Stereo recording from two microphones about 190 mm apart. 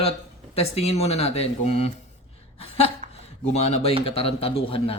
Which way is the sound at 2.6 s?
30° left (ahead or behind).